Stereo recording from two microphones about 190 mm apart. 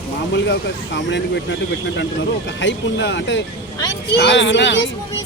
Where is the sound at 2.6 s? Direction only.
70° left (ahead or behind).